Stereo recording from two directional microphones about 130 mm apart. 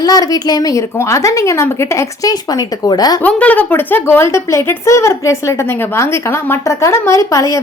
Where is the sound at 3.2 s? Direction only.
10° left (ahead or behind).